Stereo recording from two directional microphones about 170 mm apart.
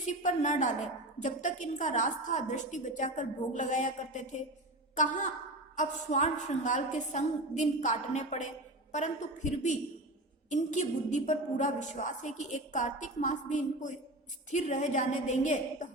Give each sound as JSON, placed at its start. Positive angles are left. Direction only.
{"t": 0.0, "sound": "a woman's voice", "side_deg": 45}